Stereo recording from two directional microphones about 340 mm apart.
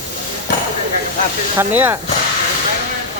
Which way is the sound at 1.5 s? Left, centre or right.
Centre.